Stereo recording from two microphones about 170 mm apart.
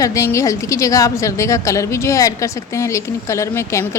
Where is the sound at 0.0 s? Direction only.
20° left (ahead or behind).